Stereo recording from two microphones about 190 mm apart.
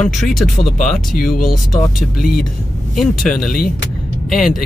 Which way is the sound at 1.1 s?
45° left (ahead or behind).